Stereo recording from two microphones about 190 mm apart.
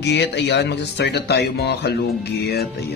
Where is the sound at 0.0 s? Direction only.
65° left (ahead or behind).